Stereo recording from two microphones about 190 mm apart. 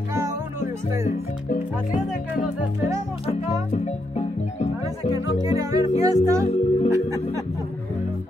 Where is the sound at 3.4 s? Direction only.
35° left (ahead or behind).